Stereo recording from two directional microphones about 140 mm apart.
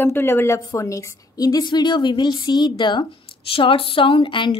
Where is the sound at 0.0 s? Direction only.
15° left (ahead or behind).